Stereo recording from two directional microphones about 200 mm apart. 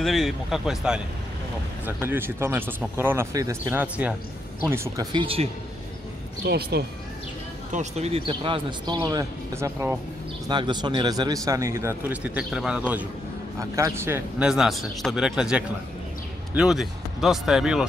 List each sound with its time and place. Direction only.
0.0 s a man's voice: centre (ahead or behind)
5.1 s speech: 25° right (ahead or behind)
6.4 s speech: 55° right (ahead or behind)
7.7 s a man's voice: 35° right (ahead or behind); by 17.8 s centre (ahead or behind)